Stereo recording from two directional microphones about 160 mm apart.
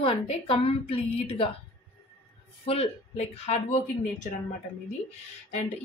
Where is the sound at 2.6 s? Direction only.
40° left (ahead or behind).